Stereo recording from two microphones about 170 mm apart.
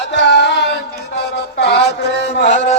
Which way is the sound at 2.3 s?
90° left.